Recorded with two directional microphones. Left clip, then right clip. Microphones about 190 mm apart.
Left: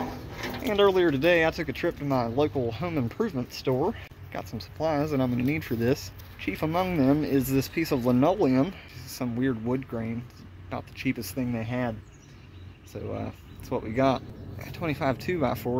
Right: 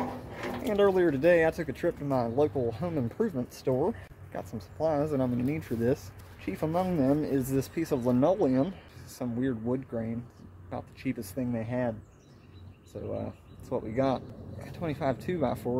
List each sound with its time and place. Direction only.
0.4 s speech: 5° left (ahead or behind)
12.9 s speech: 10° left (ahead or behind)